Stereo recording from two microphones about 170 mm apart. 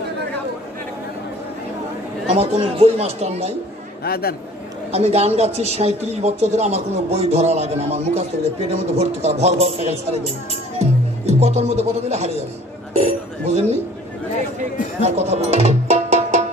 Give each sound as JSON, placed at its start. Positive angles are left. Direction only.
{"t": 2.3, "sound": "speech", "side_deg": -40}
{"t": 4.0, "sound": "a man's voice", "side_deg": 65}
{"t": 4.9, "sound": "speech", "side_deg": -35}
{"t": 12.9, "sound": "a sound", "side_deg": -40}
{"t": 15.0, "sound": "music", "side_deg": -40}